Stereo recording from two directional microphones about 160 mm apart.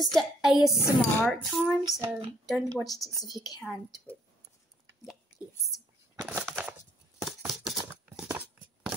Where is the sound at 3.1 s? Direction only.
25° left (ahead or behind).